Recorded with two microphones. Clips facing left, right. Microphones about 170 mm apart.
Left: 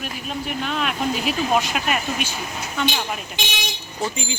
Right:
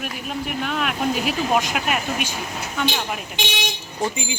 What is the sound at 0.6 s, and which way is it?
Speech, 10° right (ahead or behind).